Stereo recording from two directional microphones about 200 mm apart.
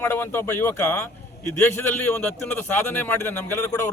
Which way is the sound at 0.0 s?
10° left (ahead or behind).